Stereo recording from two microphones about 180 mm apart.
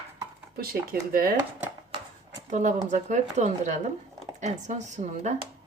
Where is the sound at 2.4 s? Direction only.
40° right (ahead or behind).